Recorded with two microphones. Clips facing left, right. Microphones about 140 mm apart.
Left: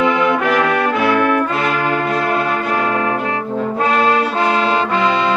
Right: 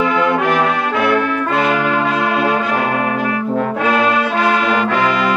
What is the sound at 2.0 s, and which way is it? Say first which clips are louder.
Music: right 1 dB; 90° right.